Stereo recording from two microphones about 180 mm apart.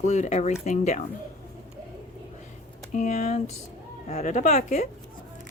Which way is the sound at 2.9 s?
45° left (ahead or behind).